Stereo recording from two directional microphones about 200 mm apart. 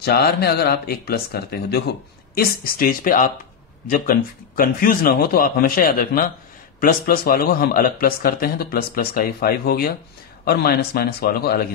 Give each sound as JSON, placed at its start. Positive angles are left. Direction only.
{"t": 0.0, "sound": "a man's voice", "side_deg": 50}